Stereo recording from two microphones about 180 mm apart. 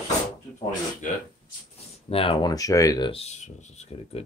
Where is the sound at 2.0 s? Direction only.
30° left (ahead or behind).